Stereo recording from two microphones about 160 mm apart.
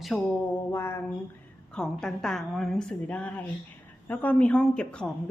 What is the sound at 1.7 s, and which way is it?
A woman's voice, 5° left (ahead or behind).